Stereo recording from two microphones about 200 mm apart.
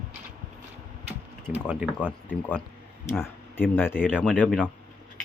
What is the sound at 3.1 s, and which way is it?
Speech, 10° left (ahead or behind).